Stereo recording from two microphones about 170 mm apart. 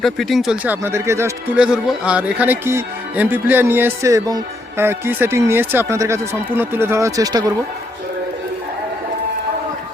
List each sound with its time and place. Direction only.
0.0 s speech: centre (ahead or behind); by 1.3 s 15° right (ahead or behind)
1.5 s speech: 5° right (ahead or behind); by 7.5 s 20° right (ahead or behind)